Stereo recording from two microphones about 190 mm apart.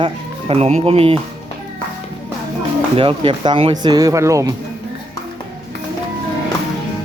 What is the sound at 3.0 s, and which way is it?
Speech, 25° right (ahead or behind).